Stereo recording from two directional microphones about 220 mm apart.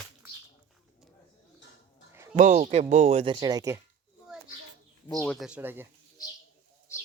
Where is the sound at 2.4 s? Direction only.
35° right (ahead or behind); by 3.8 s 15° right (ahead or behind).